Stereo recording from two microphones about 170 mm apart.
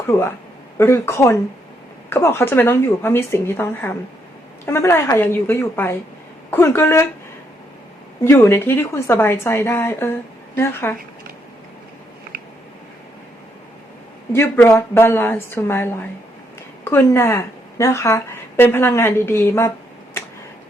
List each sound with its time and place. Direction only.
0.1 s a woman's voice: 15° left (ahead or behind)
8.2 s a woman's voice: 15° left (ahead or behind)
12.3 s a sound: 65° right (ahead or behind)
14.3 s a woman's voice: 15° left (ahead or behind)